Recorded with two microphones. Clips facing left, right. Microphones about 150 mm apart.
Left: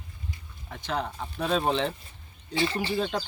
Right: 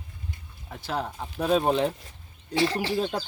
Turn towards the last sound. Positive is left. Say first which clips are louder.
# right 1 dB
turn(degrees=-10)  # may be behind; listen again after turning